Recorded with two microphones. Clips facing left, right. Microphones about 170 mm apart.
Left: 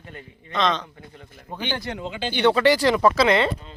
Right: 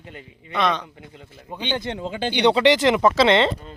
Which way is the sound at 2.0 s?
45° right (ahead or behind).